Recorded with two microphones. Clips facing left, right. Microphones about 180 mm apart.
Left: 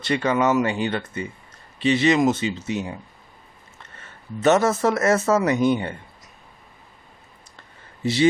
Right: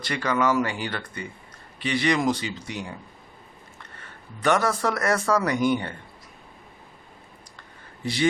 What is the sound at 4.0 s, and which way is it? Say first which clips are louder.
Speech: left 6 dB; 25° left (ahead or behind).